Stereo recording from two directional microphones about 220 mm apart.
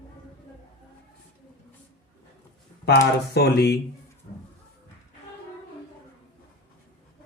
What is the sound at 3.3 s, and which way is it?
Speech, 50° left (ahead or behind).